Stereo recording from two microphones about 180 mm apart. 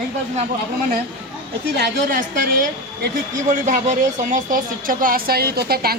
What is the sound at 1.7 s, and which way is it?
Speech, 55° right (ahead or behind).